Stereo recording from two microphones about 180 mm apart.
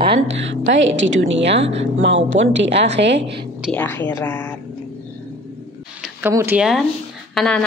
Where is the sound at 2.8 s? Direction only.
75° right (ahead or behind).